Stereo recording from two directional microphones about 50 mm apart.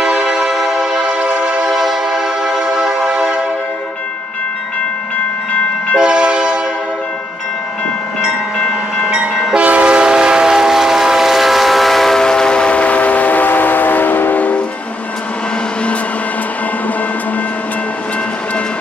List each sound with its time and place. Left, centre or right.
0.0 s music: centre
5.9 s train: centre
9.0 s train: right
9.3 s train: centre
9.6 s train: right; by 14.6 s left